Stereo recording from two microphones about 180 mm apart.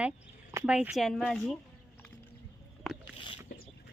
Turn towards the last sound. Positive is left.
turn(degrees=0)  # may be behind; listen again after turning